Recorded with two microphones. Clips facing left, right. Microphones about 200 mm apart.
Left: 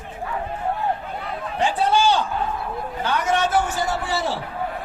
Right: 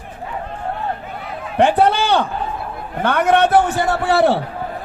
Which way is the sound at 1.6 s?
60° right (ahead or behind).